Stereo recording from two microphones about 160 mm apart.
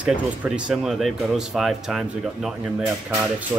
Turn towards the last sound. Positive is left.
turn(degrees=-5)  # may be behind; listen again after turning